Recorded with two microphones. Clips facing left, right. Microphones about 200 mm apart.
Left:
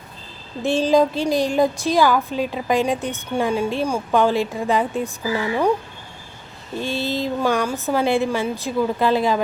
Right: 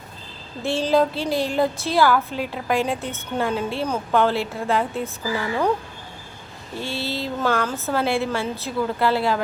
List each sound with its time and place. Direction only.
0.6 s a woman's voice: 15° left (ahead or behind)
6.7 s a woman's voice: 15° left (ahead or behind)